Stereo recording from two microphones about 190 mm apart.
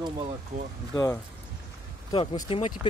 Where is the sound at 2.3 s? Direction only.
30° left (ahead or behind).